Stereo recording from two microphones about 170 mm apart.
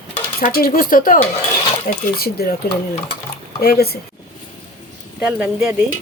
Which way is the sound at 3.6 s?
65° left (ahead or behind).